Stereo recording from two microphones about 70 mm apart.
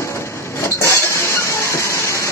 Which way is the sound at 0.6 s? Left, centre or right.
Left.